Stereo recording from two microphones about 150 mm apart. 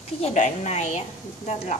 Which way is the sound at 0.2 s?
50° left (ahead or behind).